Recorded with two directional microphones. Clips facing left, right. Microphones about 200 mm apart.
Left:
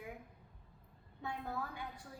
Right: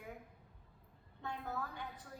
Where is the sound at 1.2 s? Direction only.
10° left (ahead or behind).